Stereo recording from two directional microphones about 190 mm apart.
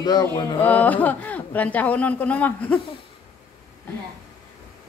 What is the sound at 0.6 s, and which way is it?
Speech, 10° left (ahead or behind).